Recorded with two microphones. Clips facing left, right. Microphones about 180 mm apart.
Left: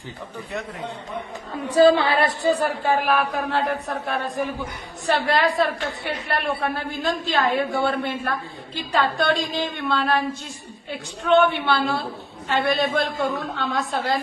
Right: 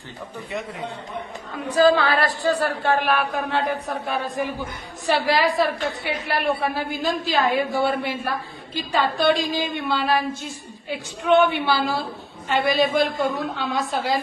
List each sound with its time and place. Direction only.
1.7 s speech: 30° left (ahead or behind); by 3.0 s 15° left (ahead or behind)
3.0 s a woman's voice: centre (ahead or behind)